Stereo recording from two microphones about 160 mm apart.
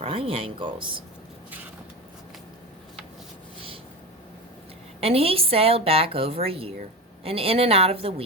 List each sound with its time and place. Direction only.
0.0 s a woman's voice: 35° right (ahead or behind)
4.9 s a woman's voice: 35° right (ahead or behind)